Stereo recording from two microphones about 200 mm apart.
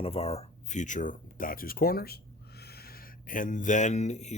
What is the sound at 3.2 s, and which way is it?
Speech, 40° left (ahead or behind).